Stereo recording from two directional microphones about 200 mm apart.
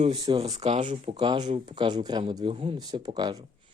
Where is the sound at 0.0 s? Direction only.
25° right (ahead or behind).